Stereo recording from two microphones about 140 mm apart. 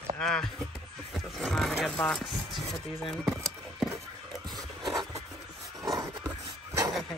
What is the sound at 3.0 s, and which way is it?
Keys jangling, 5° left (ahead or behind).